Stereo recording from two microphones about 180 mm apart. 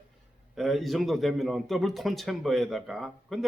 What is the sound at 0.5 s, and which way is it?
A man's voice, centre (ahead or behind).